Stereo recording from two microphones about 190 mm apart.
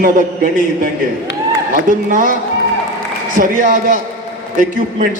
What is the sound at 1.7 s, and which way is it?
Speech, 45° right (ahead or behind).